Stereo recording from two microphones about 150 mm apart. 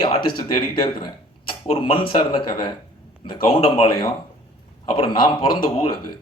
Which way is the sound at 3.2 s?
35° left (ahead or behind).